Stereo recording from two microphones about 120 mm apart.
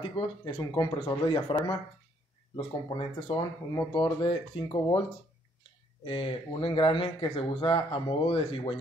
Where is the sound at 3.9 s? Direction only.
45° left (ahead or behind).